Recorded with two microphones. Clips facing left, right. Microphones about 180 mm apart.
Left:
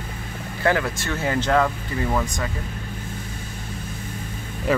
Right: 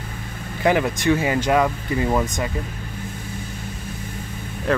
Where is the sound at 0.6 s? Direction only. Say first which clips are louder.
Right 4 dB; 15° right (ahead or behind).